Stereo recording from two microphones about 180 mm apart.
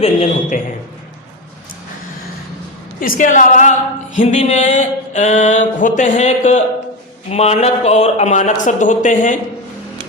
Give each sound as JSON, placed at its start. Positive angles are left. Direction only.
{"t": 0.0, "sound": "speech", "side_deg": 40}
{"t": 3.0, "sound": "a woman's voice", "side_deg": 45}